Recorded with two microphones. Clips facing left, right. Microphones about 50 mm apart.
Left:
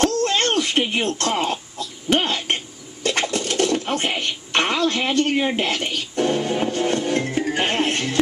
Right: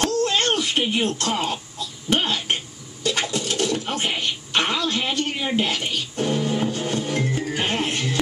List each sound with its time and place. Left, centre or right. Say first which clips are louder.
0.0 s a sound: left 2 dB; left
1.3 s throat clearing: left 2 dB; left
4.2 s speech: left 1 dB; left